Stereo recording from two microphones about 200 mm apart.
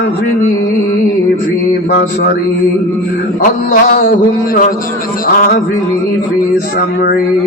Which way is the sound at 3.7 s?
40° left (ahead or behind).